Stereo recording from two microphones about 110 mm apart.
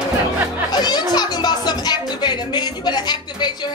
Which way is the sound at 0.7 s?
40° left (ahead or behind).